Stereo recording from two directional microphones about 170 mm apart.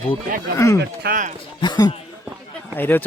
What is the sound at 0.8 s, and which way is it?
Speech, 60° right (ahead or behind).